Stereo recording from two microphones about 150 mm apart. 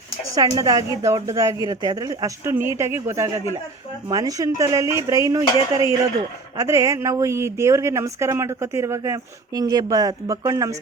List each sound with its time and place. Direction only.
0.3 s a woman's voice: 25° right (ahead or behind)
6.6 s a woman's voice: 20° right (ahead or behind)